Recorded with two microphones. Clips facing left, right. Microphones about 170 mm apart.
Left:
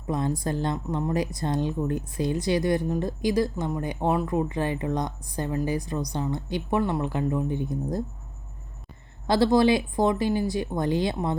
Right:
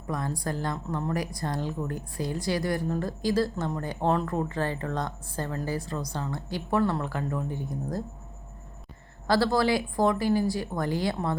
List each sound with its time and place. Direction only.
0.1 s speech: 20° left (ahead or behind)
9.2 s speech: 20° left (ahead or behind)